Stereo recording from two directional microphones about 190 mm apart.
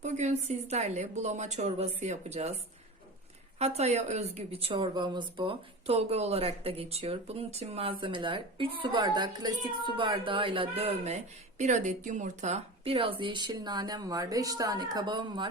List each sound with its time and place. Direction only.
0.0 s a woman's voice: 35° right (ahead or behind)
3.6 s a woman's voice: 35° right (ahead or behind)